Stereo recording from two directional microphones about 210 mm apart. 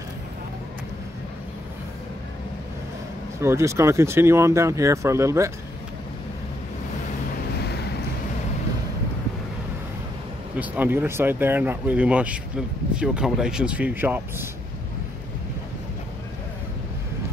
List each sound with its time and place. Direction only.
3.3 s speech: 15° right (ahead or behind)
10.6 s speech: 10° right (ahead or behind)